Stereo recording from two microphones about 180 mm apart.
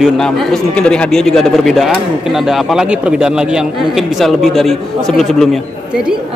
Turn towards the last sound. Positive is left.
turn(degrees=0)  # may be behind; listen again after turning